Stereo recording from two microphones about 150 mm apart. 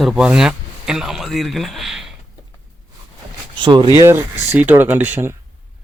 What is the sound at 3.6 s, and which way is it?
Speech, 30° right (ahead or behind).